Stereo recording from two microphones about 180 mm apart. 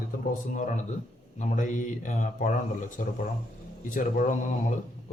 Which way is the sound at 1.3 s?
45° left (ahead or behind).